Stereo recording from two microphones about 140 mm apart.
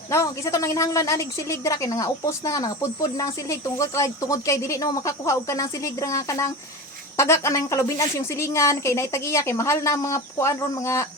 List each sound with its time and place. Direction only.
0.1 s a woman's voice: 20° left (ahead or behind)